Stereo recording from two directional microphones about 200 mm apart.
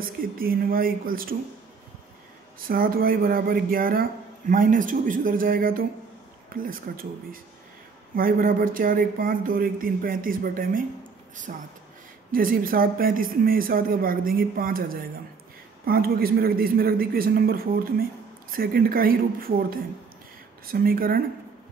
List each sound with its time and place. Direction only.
0.0 s speech: 45° right (ahead or behind)
2.6 s speech: 45° right (ahead or behind)
8.2 s speech: 45° right (ahead or behind)